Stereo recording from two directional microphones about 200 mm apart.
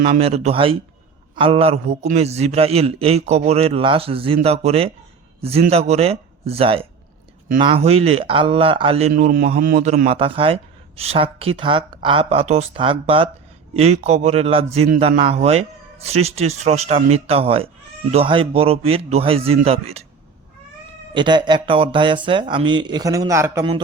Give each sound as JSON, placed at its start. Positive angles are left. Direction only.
{"t": 0.0, "sound": "a man's voice", "side_deg": -30}
{"t": 21.1, "sound": "a man's voice", "side_deg": -25}